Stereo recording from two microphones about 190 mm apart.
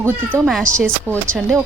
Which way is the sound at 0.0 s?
5° right (ahead or behind).